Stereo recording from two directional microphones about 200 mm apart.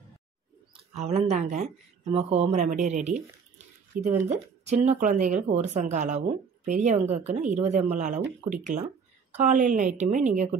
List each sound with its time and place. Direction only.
0.9 s speech: 30° right (ahead or behind)